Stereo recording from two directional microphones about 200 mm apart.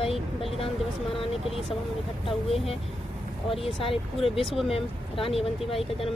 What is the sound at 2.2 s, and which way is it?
Speech, 30° left (ahead or behind).